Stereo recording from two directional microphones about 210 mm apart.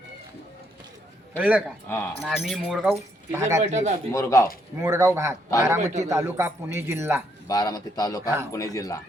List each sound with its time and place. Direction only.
1.4 s a man's voice: 5° right (ahead or behind)
1.9 s a man's voice: 10° left (ahead or behind)
2.2 s speech: centre (ahead or behind)
3.3 s a man's voice: 15° right (ahead or behind)
3.6 s speech: 35° right (ahead or behind)
4.1 s a man's voice: 15° left (ahead or behind)
4.8 s a man's voice: 15° right (ahead or behind)
7.4 s a man's voice: 15° left (ahead or behind)